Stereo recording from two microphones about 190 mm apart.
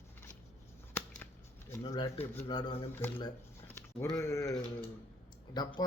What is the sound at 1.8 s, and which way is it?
A man's voice, 20° left (ahead or behind).